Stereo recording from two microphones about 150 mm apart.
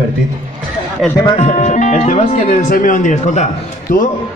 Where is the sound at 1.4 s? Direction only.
50° left (ahead or behind).